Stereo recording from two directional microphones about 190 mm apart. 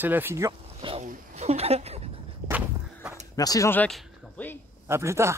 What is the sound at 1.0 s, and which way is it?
A woman's voice, 35° right (ahead or behind).